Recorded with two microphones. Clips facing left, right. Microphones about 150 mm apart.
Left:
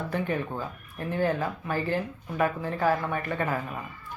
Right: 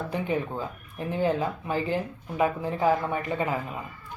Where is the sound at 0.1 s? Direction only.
15° right (ahead or behind).